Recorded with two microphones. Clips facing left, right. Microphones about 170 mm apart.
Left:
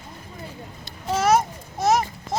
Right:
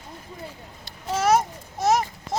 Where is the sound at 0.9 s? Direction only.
70° left (ahead or behind).